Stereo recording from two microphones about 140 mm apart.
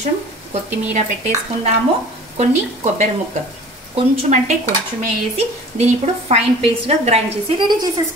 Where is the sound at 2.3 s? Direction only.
55° right (ahead or behind).